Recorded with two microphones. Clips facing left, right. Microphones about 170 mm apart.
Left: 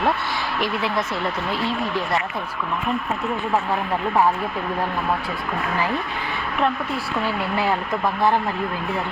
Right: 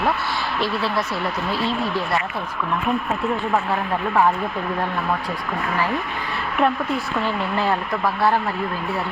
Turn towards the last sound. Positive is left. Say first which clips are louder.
# right 1 dB
turn(degrees=10)  # may be behind; listen again after turning